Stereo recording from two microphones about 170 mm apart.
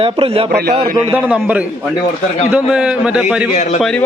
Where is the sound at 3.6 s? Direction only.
45° left (ahead or behind).